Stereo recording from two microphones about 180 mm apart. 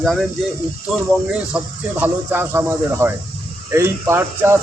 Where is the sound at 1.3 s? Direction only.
10° right (ahead or behind).